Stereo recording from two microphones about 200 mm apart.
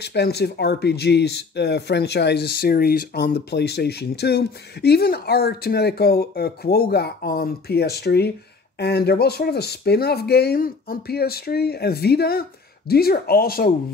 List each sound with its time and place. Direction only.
0.0 s speech: 55° left (ahead or behind)